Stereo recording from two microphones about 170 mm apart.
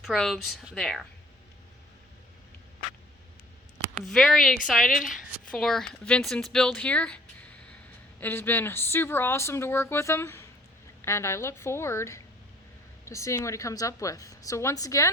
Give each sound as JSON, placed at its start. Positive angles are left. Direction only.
{"t": 0.0, "sound": "speech", "side_deg": 0}
{"t": 4.0, "sound": "speech", "side_deg": 0}
{"t": 8.2, "sound": "a woman's voice", "side_deg": 10}